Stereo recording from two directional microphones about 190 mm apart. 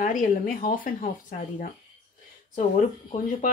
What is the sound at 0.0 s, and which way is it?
Speech, 45° left (ahead or behind).